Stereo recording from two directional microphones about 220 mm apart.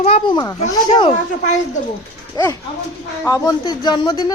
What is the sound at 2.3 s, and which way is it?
A woman's voice, 15° left (ahead or behind).